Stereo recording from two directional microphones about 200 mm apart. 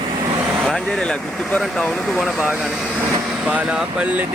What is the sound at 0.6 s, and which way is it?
Speech, 5° left (ahead or behind).